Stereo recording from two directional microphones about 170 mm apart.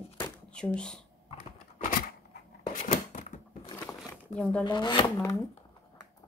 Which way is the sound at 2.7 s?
55° left (ahead or behind).